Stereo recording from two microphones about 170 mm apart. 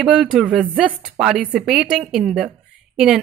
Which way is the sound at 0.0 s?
5° right (ahead or behind).